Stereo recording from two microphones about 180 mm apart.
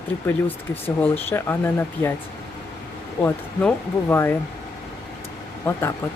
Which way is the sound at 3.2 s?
10° left (ahead or behind).